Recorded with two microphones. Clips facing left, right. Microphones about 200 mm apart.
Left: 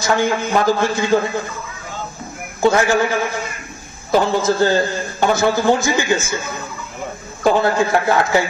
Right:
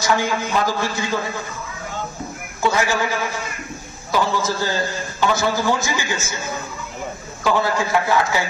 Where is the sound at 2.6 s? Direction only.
55° left (ahead or behind).